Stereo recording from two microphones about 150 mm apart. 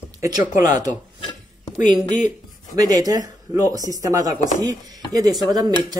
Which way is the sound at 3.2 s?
25° right (ahead or behind).